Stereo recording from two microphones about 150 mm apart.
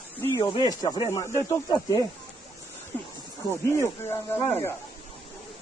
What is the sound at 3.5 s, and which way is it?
Speech, 15° left (ahead or behind).